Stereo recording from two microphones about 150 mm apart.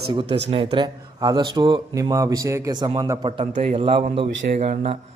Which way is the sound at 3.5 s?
45° right (ahead or behind).